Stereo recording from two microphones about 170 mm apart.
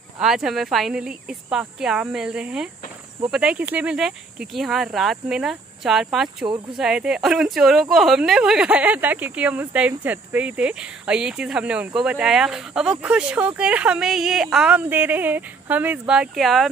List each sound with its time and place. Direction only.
0.2 s speech: 5° right (ahead or behind)
6.4 s speech: 25° right (ahead or behind)
6.8 s speech: 5° right (ahead or behind)